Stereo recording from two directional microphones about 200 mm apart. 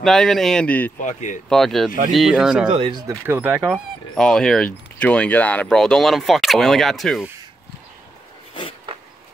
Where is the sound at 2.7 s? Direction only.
25° right (ahead or behind).